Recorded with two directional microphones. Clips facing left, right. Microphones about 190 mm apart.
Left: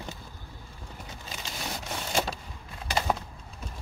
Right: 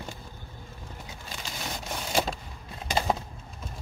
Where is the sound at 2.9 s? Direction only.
20° right (ahead or behind).